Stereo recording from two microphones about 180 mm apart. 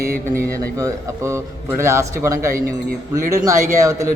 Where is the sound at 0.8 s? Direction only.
20° right (ahead or behind).